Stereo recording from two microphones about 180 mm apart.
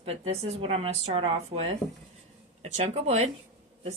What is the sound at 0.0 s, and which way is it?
Speech, 35° right (ahead or behind).